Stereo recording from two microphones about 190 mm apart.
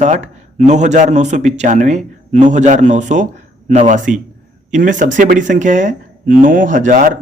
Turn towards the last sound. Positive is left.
turn(degrees=-45)  # may be behind; listen again after turning